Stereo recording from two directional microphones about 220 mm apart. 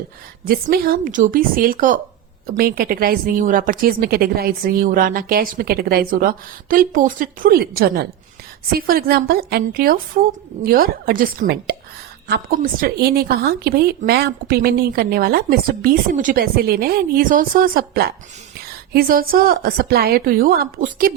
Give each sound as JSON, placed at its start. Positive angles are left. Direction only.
{"t": 0.4, "sound": "a woman's voice", "side_deg": -45}